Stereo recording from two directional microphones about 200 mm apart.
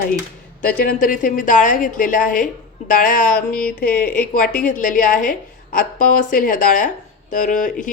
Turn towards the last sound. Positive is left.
turn(degrees=40)  # may be behind; listen again after turning